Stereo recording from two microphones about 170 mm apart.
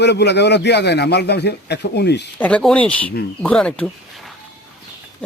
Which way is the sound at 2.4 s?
5° left (ahead or behind).